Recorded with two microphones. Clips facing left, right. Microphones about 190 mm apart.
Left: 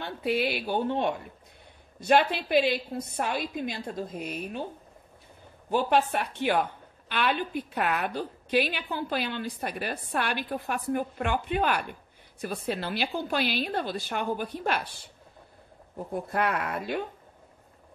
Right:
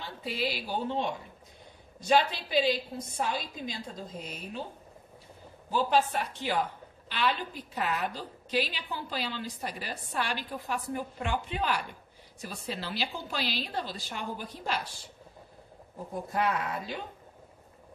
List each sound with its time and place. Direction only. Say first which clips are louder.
0.0 s a woman's voice: left 6 dB; 60° left (ahead or behind)
5.7 s a woman's voice: left 2 dB; 60° left (ahead or behind)
16.3 s a woman's voice: left 1 dB; 60° left (ahead or behind)